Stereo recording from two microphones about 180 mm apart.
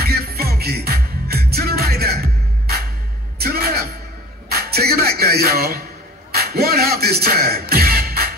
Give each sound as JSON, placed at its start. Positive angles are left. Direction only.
{"t": 0.0, "sound": "music", "side_deg": -60}
{"t": 3.3, "sound": "music", "side_deg": -60}